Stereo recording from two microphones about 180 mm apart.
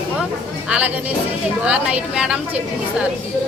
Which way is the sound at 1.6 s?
5° right (ahead or behind).